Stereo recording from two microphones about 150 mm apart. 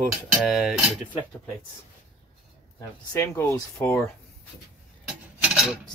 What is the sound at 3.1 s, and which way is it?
Speech, 20° left (ahead or behind).